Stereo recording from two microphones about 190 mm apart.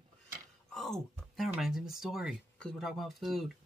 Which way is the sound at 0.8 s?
Centre (ahead or behind).